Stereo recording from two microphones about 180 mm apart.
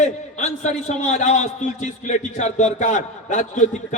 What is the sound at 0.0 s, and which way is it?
A man's voice, 40° left (ahead or behind).